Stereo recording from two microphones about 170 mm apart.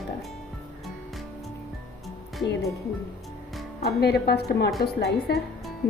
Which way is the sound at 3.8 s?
70° left (ahead or behind).